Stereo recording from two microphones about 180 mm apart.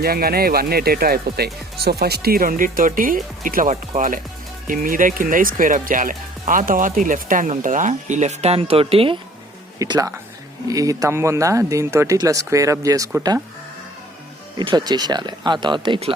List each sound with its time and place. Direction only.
0.0 s speech: 55° right (ahead or behind); by 13.4 s 20° right (ahead or behind)
14.5 s speech: 25° right (ahead or behind)